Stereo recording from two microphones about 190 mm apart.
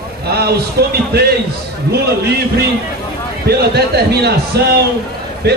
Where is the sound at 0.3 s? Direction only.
55° right (ahead or behind).